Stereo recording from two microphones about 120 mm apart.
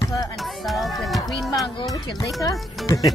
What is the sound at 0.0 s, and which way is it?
Music, 30° left (ahead or behind).